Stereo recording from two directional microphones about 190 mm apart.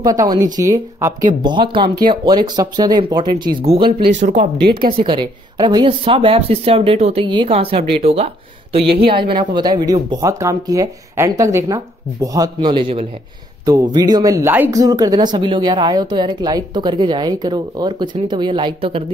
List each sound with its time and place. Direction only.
0.0 s speech: 20° right (ahead or behind)
4.2 s speech: 40° right (ahead or behind)
4.9 s speech: 25° right (ahead or behind)